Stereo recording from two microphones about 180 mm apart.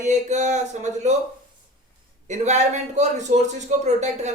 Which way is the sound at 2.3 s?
40° right (ahead or behind).